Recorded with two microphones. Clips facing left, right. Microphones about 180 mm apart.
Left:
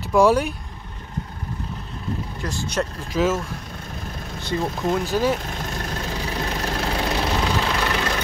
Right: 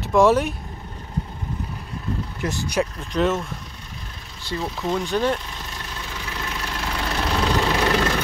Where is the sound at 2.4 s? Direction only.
20° right (ahead or behind).